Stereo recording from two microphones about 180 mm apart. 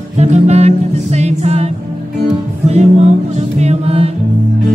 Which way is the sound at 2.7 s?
40° right (ahead or behind).